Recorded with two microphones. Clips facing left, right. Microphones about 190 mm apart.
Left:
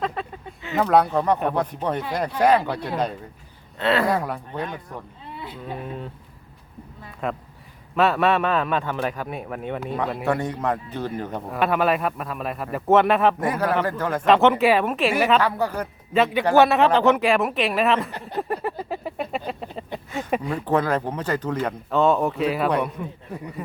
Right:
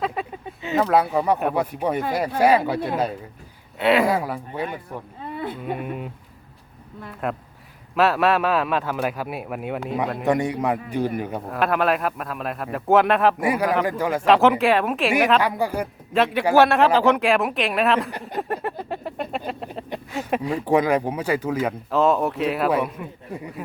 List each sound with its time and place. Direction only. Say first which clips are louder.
0.0 s a sound: right 1 dB; 10° right (ahead or behind)
0.8 s speech: left 1 dB; 5° right (ahead or behind)
5.2 s a sound: right 6 dB; 55° right (ahead or behind)
5.8 s speech: right 3 dB; 10° right (ahead or behind)
7.2 s speech: even; 5° right (ahead or behind)
10.2 s speech: right 4 dB; 15° right (ahead or behind)
11.4 s speech: even; centre (ahead or behind)
13.4 s speech: right 1 dB; 10° right (ahead or behind)
15.4 s speech: right 1 dB; 10° right (ahead or behind)
16.1 s speech: even; centre (ahead or behind)
18.1 s speech: even; 15° right (ahead or behind)
18.4 s a sound: even; centre (ahead or behind)
20.1 s speech: right 1 dB; centre (ahead or behind)
20.7 s speech: right 3 dB; 15° right (ahead or behind)